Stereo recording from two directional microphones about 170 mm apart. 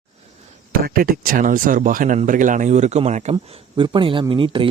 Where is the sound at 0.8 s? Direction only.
55° right (ahead or behind).